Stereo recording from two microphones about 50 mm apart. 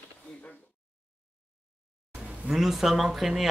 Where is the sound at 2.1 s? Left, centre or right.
Right.